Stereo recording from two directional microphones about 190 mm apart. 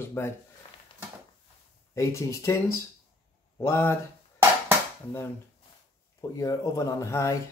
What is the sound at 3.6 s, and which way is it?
Speech, 15° left (ahead or behind).